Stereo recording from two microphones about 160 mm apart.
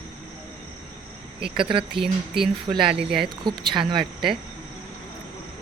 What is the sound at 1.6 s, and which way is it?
Speech, 30° right (ahead or behind).